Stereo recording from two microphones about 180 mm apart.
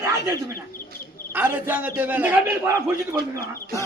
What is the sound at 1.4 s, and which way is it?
A man's voice, 10° right (ahead or behind).